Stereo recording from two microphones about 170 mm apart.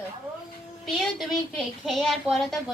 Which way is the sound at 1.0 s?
Centre (ahead or behind).